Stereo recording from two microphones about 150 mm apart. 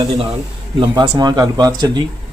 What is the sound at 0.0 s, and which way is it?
Speech, 25° right (ahead or behind).